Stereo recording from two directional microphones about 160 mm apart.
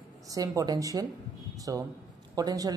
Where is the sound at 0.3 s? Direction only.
20° right (ahead or behind).